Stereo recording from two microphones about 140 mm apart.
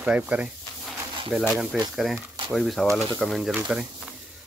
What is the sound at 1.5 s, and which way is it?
Speech, centre (ahead or behind).